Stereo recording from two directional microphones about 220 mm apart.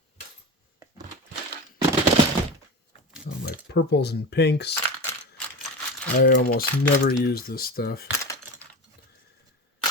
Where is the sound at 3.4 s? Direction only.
50° left (ahead or behind).